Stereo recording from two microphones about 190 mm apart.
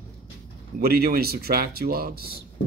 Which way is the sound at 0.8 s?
55° right (ahead or behind).